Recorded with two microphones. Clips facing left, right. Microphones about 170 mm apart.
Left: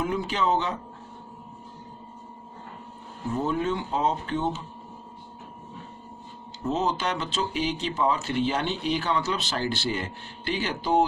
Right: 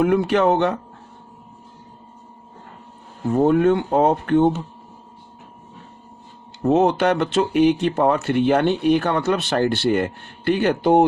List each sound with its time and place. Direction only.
0.0 s speech: 65° right (ahead or behind)
3.3 s speech: 60° right (ahead or behind)
6.6 s speech: 60° right (ahead or behind)